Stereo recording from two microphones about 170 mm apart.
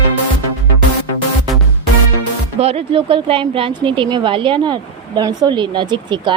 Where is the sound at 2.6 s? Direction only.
35° right (ahead or behind).